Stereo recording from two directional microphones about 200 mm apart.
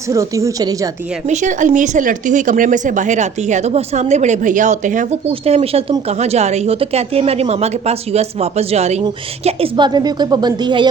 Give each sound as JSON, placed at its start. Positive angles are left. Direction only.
{"t": 0.1, "sound": "a woman's voice", "side_deg": -15}
{"t": 1.3, "sound": "a woman's voice", "side_deg": -40}